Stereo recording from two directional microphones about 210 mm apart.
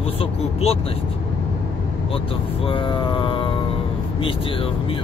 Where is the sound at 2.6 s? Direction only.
25° left (ahead or behind).